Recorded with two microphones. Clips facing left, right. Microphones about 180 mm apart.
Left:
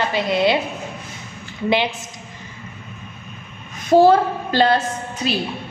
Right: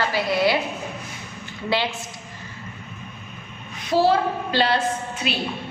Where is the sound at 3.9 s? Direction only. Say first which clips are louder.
Left 6 dB; 50° left (ahead or behind).